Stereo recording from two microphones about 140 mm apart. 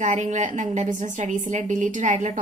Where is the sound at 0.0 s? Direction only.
55° right (ahead or behind).